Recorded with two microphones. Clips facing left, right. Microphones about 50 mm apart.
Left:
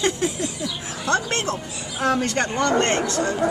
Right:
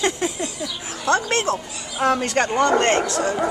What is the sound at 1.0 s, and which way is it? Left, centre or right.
Speech, right.